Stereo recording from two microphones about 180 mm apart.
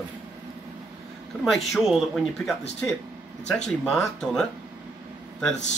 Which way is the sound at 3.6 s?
5° left (ahead or behind).